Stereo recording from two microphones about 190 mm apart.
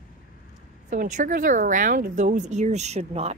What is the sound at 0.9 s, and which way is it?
Speech, 40° right (ahead or behind).